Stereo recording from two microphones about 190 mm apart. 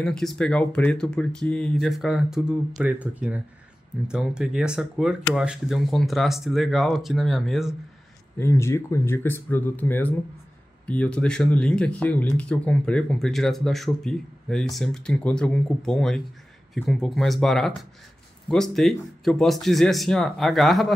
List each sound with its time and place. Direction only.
0.0 s speech: centre (ahead or behind)
8.4 s speech: 15° left (ahead or behind)